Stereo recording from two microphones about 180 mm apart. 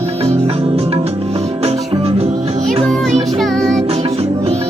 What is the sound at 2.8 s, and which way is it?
Music, centre (ahead or behind).